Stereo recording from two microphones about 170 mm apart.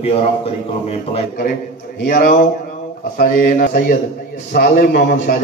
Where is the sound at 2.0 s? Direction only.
55° left (ahead or behind).